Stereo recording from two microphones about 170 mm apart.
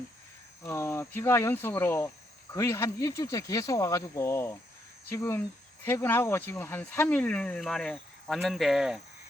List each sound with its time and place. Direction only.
0.7 s speech: 15° left (ahead or behind); by 9.0 s centre (ahead or behind)